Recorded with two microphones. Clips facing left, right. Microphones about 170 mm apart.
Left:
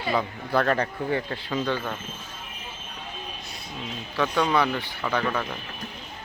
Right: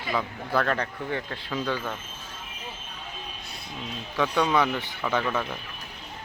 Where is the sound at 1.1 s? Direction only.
5° left (ahead or behind).